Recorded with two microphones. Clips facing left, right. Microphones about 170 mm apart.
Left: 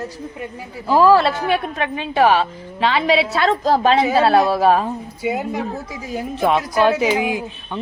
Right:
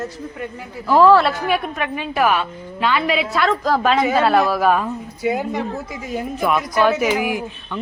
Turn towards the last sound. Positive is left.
turn(degrees=20)  # may be behind; listen again after turning